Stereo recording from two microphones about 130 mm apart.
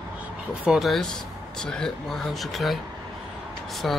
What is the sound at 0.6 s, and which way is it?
Speech, 5° right (ahead or behind).